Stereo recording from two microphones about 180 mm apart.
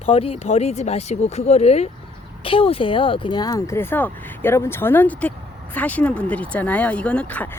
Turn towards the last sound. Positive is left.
turn(degrees=10)  # may be behind; listen again after turning